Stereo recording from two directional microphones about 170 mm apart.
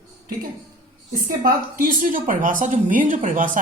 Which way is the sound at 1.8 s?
55° right (ahead or behind).